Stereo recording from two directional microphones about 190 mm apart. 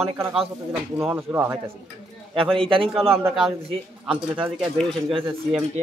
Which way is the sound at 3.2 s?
5° right (ahead or behind).